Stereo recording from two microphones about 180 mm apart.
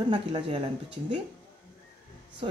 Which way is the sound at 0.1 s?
30° right (ahead or behind).